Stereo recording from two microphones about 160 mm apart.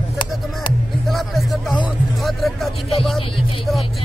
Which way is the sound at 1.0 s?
Centre (ahead or behind).